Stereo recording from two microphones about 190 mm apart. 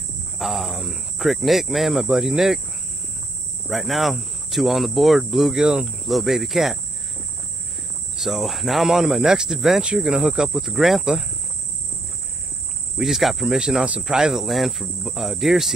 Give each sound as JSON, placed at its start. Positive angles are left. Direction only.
{"t": 0.4, "sound": "speech", "side_deg": 0}
{"t": 3.6, "sound": "speech", "side_deg": 0}
{"t": 8.2, "sound": "speech", "side_deg": 0}
{"t": 12.9, "sound": "speech", "side_deg": 0}